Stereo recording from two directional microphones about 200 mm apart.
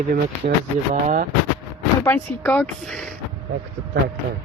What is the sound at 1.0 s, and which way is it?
Speech, 40° right (ahead or behind).